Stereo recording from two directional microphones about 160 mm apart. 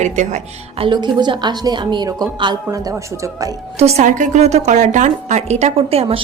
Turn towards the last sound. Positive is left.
turn(degrees=-40)  # may be behind; listen again after turning